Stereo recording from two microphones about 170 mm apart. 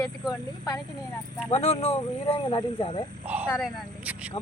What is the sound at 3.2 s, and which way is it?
Speech, 10° right (ahead or behind).